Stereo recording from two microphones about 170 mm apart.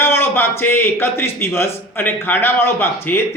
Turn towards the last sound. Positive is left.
turn(degrees=10)  # may be behind; listen again after turning